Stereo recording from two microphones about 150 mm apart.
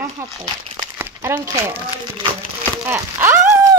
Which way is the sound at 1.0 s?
15° right (ahead or behind).